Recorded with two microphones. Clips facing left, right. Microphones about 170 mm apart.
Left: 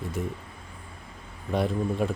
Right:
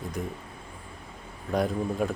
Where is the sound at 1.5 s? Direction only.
Centre (ahead or behind).